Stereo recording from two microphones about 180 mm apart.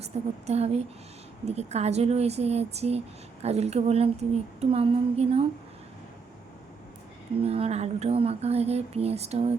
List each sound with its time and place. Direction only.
0.0 s speech: 35° right (ahead or behind)
7.4 s speech: 35° right (ahead or behind)